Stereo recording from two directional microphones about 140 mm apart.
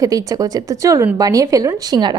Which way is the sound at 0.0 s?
25° right (ahead or behind).